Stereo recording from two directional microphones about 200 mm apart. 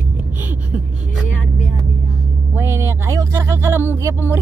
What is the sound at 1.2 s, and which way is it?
Speech, 40° left (ahead or behind).